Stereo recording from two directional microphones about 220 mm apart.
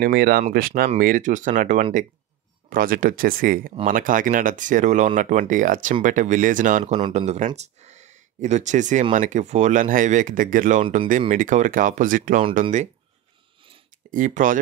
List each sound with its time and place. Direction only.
0.0 s speech: 45° right (ahead or behind)
6.9 s speech: 25° right (ahead or behind)
14.1 s speech: 35° right (ahead or behind)